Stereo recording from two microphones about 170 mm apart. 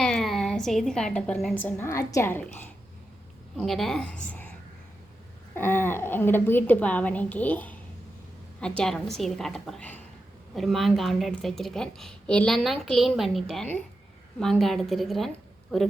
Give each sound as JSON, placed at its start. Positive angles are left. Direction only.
{"t": 0.0, "sound": "a woman's voice", "side_deg": 0}
{"t": 3.6, "sound": "a woman's voice", "side_deg": 0}
{"t": 5.5, "sound": "a woman's voice", "side_deg": 15}